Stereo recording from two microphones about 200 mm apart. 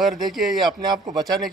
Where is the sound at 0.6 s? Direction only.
20° right (ahead or behind).